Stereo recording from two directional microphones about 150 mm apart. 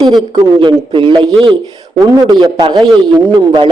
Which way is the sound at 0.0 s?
30° right (ahead or behind).